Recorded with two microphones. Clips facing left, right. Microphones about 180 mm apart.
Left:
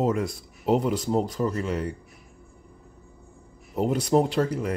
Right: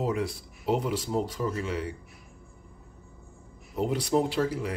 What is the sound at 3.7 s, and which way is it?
Speech, 45° left (ahead or behind).